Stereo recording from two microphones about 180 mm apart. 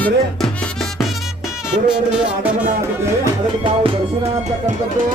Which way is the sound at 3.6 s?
30° right (ahead or behind).